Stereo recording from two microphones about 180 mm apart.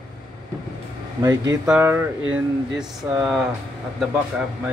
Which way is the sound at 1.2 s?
20° right (ahead or behind).